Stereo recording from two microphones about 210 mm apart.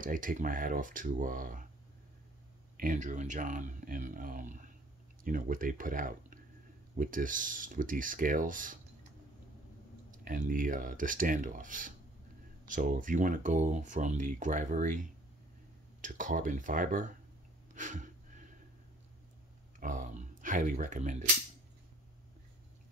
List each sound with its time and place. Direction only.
0.0 s speech: 40° right (ahead or behind)
2.8 s speech: 35° right (ahead or behind)
10.1 s speech: 40° right (ahead or behind)
19.8 s speech: 35° right (ahead or behind)